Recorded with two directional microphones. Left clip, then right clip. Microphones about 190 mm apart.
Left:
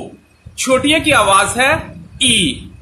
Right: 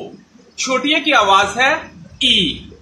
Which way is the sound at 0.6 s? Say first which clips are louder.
Left 3 dB; 50° left (ahead or behind).